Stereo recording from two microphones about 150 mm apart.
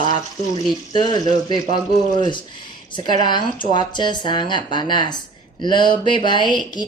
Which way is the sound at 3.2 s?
30° left (ahead or behind).